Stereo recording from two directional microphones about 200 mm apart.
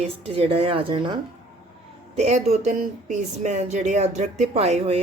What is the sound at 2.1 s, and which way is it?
Speech, 35° right (ahead or behind).